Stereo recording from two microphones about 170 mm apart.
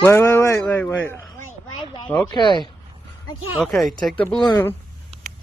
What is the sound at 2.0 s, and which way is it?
Speech, 30° left (ahead or behind).